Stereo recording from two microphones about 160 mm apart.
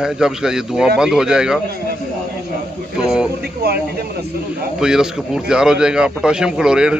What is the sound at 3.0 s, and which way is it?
Speech, 5° right (ahead or behind).